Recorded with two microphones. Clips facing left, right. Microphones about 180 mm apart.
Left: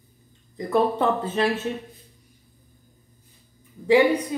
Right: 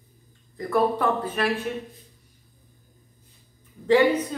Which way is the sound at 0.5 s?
20° left (ahead or behind).